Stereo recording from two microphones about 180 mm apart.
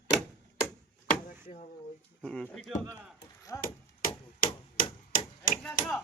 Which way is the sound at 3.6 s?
50° left (ahead or behind).